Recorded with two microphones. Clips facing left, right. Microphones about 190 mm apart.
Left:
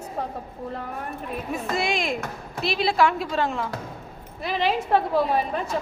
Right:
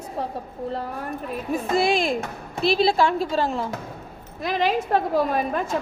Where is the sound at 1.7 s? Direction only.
35° right (ahead or behind).